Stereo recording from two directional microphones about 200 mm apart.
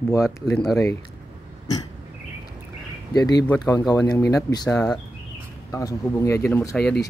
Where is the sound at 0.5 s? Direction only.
5° left (ahead or behind).